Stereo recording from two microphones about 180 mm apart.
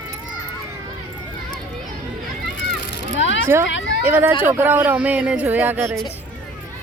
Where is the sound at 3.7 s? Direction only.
90° left.